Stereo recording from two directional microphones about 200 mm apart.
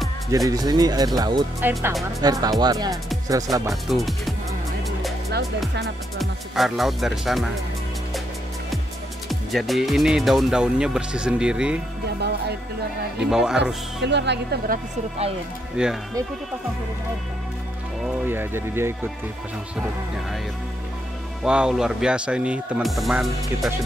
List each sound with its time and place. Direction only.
0.5 s speech: 20° right (ahead or behind)
3.8 s speech: centre (ahead or behind)
6.1 s speech: centre (ahead or behind)
9.3 s speech: centre (ahead or behind)
12.2 s speech: 55° right (ahead or behind)
13.2 s speech: 5° right (ahead or behind)
14.0 s speech: 60° right (ahead or behind)
15.8 s speech: 5° right (ahead or behind)
18.0 s speech: 10° right (ahead or behind)
21.5 s speech: 5° right (ahead or behind)